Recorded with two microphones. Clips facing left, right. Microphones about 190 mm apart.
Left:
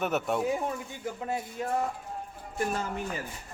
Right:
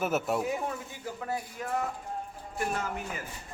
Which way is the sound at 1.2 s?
25° left (ahead or behind).